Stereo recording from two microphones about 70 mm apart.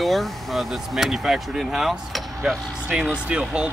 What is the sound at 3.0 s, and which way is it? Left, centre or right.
Speech, centre.